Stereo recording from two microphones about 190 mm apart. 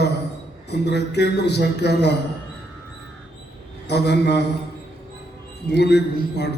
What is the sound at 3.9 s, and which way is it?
Speech, 60° left (ahead or behind).